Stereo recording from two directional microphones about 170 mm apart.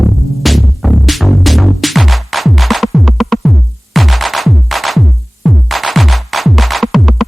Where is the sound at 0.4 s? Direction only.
Centre (ahead or behind).